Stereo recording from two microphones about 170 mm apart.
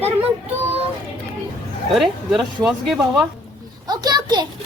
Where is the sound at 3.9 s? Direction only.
25° right (ahead or behind).